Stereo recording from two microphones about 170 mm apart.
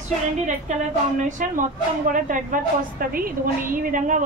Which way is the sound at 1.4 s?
50° right (ahead or behind).